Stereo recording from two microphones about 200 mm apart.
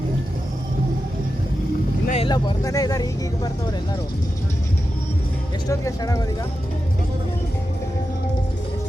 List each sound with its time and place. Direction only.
2.0 s speech: 30° left (ahead or behind)
5.6 s speech: 15° left (ahead or behind)